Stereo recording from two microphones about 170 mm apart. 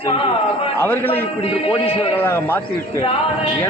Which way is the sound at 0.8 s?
10° left (ahead or behind).